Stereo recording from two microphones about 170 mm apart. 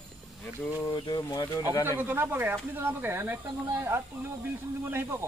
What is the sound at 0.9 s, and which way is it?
Speech, 30° left (ahead or behind).